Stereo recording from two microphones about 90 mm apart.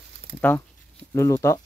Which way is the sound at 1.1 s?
35° left (ahead or behind).